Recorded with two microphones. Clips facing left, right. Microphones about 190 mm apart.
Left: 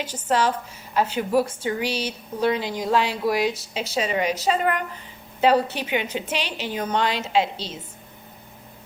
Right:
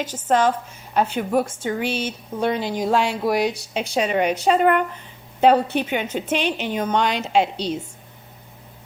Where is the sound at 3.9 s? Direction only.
60° right (ahead or behind).